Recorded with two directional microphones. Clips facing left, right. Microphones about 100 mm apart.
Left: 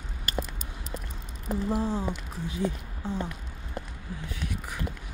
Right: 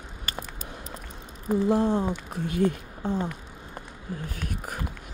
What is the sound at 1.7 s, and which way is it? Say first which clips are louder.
Speech: right 5 dB; 65° right (ahead or behind).